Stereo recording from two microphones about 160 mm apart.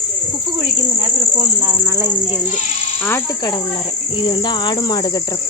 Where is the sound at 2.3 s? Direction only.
45° left (ahead or behind).